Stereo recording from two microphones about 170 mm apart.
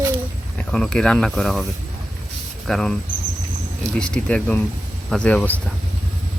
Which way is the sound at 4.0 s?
5° left (ahead or behind).